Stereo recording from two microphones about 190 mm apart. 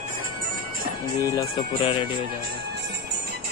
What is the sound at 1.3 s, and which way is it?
Speech, 25° left (ahead or behind).